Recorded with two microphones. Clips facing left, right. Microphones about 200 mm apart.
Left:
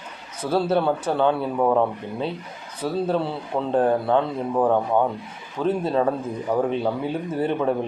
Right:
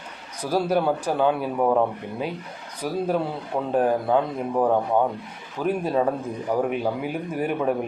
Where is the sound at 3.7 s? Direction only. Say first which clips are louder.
Left 1 dB; 10° right (ahead or behind).